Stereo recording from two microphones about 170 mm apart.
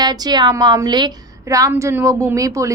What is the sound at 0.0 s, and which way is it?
A woman's voice, 25° right (ahead or behind).